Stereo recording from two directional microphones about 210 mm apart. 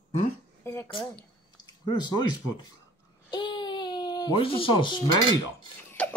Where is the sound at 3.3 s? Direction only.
20° left (ahead or behind).